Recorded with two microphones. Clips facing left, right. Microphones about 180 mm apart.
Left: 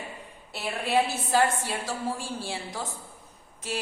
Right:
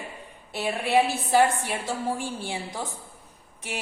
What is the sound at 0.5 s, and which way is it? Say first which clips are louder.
A man's voice: right 3 dB; 15° right (ahead or behind).